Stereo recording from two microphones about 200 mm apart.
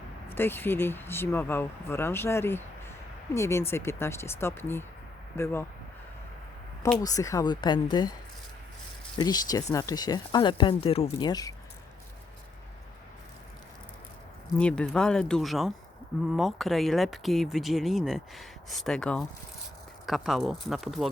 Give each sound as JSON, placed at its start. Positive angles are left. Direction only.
{"t": 0.3, "sound": "speech", "side_deg": 10}
{"t": 7.0, "sound": "speech", "side_deg": 15}
{"t": 9.1, "sound": "speech", "side_deg": 20}
{"t": 14.6, "sound": "speech", "side_deg": 5}